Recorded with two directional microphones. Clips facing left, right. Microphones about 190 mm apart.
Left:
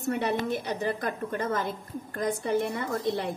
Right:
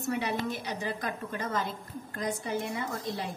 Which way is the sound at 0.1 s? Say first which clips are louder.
Left 4 dB; 55° left (ahead or behind).